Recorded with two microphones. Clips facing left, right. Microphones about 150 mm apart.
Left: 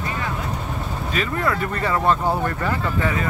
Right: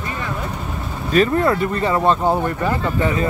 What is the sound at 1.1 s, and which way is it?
Speech, 35° right (ahead or behind).